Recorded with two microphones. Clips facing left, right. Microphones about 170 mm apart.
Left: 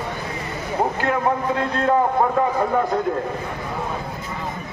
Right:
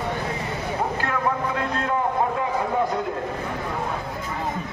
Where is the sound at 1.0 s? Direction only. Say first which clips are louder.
Left 4 dB; 25° left (ahead or behind).